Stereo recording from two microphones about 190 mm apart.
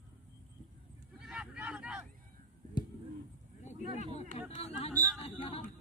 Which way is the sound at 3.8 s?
35° right (ahead or behind).